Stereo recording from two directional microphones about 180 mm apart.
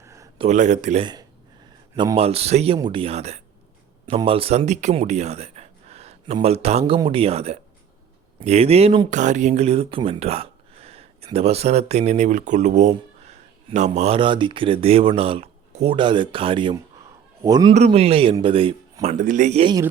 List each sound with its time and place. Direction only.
0.0 s a sound: 15° right (ahead or behind)
0.3 s a man's voice: 40° right (ahead or behind)
2.0 s a man's voice: 30° right (ahead or behind)
9.0 s a man's voice: 40° right (ahead or behind); by 17.7 s 20° right (ahead or behind)
17.7 s a man's voice: 35° right (ahead or behind)
19.1 s speech: 45° right (ahead or behind)